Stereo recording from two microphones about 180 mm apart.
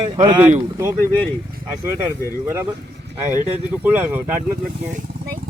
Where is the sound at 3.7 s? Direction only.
10° right (ahead or behind).